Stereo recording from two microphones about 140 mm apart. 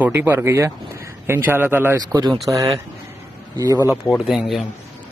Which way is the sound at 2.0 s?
30° right (ahead or behind).